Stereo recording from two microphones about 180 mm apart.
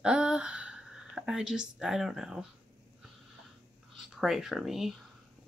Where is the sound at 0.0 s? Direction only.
5° right (ahead or behind).